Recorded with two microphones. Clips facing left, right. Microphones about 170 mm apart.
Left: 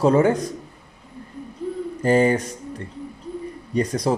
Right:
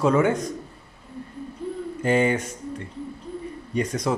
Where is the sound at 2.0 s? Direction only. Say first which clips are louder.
Left 4 dB; 35° left (ahead or behind).